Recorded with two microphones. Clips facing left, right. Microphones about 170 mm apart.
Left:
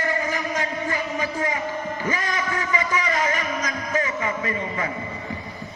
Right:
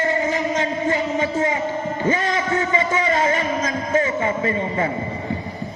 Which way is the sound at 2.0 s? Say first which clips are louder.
Right 7 dB; 25° right (ahead or behind).